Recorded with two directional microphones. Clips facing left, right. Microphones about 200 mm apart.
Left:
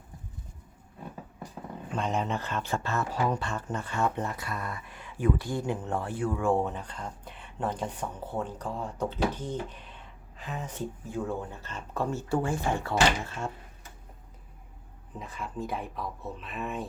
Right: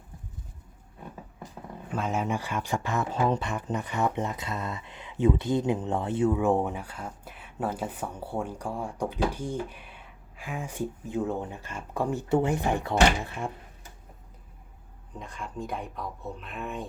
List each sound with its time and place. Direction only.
1.9 s speech: 5° right (ahead or behind)
15.2 s speech: 5° left (ahead or behind)